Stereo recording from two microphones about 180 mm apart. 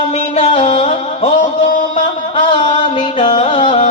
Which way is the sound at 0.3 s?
30° left (ahead or behind).